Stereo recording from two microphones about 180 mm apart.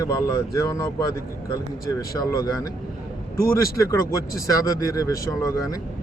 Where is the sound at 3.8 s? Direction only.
20° left (ahead or behind).